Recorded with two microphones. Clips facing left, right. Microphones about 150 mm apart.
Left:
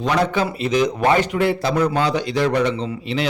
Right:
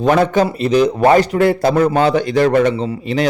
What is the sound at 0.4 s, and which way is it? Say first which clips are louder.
A man's voice: right 5 dB; 35° right (ahead or behind).